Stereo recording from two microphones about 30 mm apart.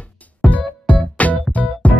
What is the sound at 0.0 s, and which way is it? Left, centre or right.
Music, left.